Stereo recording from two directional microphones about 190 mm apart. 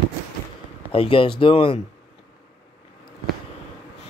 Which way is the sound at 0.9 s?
30° left (ahead or behind).